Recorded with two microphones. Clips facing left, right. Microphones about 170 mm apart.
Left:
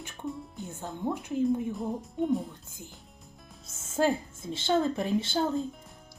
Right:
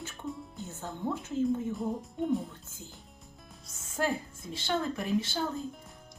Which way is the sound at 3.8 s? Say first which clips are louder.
Left 6 dB; 25° left (ahead or behind).